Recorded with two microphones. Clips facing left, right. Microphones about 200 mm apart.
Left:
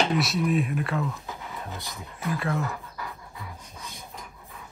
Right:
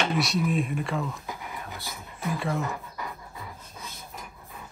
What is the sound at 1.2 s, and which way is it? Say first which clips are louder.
Pant: even; 15° right (ahead or behind).